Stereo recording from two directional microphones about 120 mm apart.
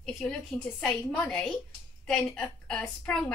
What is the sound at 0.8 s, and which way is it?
A woman's voice, 5° left (ahead or behind).